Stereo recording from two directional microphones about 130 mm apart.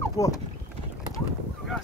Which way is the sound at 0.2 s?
30° left (ahead or behind).